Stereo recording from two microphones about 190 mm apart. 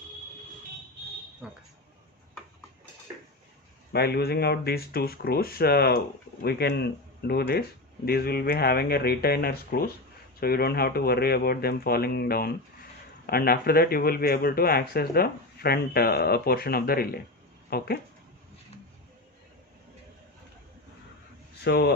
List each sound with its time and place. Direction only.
1.4 s speech: 5° right (ahead or behind)
3.9 s speech: 55° left (ahead or behind)
21.6 s speech: 60° left (ahead or behind)